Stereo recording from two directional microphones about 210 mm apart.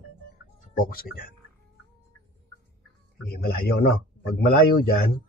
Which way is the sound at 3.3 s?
45° left (ahead or behind).